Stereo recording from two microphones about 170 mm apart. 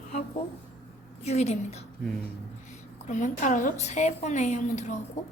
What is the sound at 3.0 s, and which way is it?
A woman's voice, 45° left (ahead or behind).